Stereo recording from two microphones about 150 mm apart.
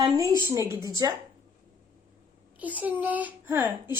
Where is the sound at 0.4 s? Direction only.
20° right (ahead or behind).